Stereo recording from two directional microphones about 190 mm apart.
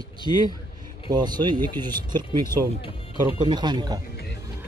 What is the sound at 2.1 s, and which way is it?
Speech, 15° left (ahead or behind).